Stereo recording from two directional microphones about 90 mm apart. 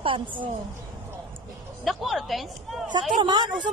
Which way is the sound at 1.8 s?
Centre (ahead or behind).